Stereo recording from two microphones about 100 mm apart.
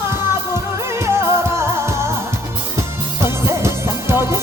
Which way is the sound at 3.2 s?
25° right (ahead or behind).